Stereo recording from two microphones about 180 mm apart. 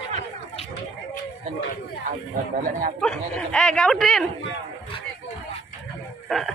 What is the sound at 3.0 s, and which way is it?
Speech, 5° left (ahead or behind).